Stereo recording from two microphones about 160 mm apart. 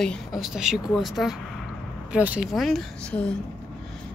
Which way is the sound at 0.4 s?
5° right (ahead or behind).